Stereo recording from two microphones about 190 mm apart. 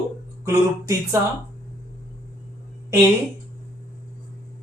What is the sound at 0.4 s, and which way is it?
Speech, 15° right (ahead or behind).